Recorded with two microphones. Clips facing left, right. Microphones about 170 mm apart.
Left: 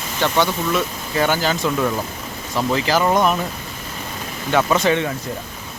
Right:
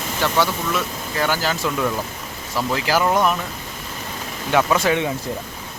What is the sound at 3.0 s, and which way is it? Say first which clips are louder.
Speech: left 1 dB; 5° left (ahead or behind).